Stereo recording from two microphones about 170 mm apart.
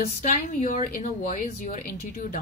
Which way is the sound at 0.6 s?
50° left (ahead or behind).